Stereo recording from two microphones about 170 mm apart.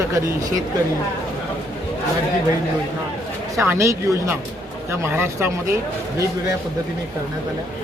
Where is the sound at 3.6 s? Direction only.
15° right (ahead or behind).